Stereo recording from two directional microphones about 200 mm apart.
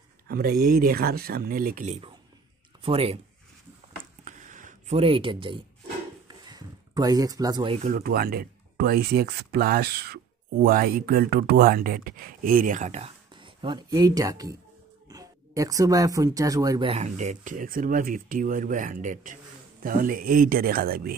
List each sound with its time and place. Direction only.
0.3 s speech: 50° right (ahead or behind)
2.8 s speech: 30° right (ahead or behind)
4.2 s a sound: 40° right (ahead or behind); by 7.8 s 20° right (ahead or behind)
7.8 s speech: 45° right (ahead or behind); by 16.9 s 20° right (ahead or behind)
16.9 s speech: 35° right (ahead or behind)